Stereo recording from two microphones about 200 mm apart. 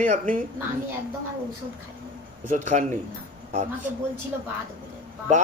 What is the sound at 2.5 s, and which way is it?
Speech, 40° right (ahead or behind).